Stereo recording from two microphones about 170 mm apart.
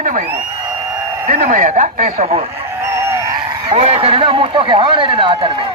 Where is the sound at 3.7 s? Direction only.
35° right (ahead or behind).